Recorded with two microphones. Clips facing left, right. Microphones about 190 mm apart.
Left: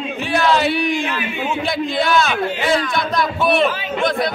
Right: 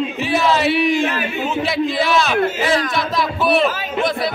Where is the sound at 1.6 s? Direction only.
Centre (ahead or behind).